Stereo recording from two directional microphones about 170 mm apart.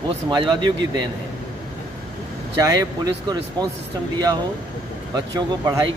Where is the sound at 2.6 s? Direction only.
25° right (ahead or behind).